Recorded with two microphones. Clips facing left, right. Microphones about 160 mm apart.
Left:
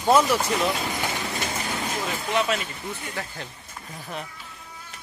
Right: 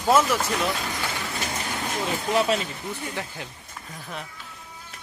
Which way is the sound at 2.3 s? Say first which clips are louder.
Right 2 dB; 35° right (ahead or behind).